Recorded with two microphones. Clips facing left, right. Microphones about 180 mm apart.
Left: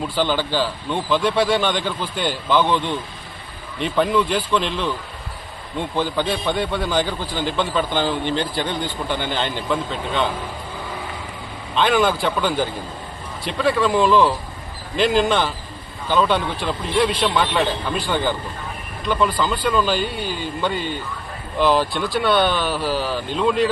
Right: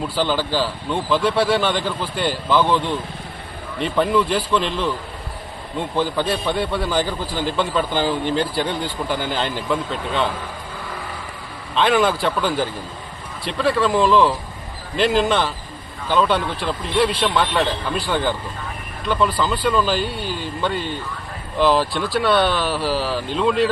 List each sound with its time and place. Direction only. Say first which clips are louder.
0.2 s a man's voice: even; centre (ahead or behind)
6.0 s a man's voice: right 1 dB; centre (ahead or behind)
11.7 s a man's voice: right 1 dB; centre (ahead or behind)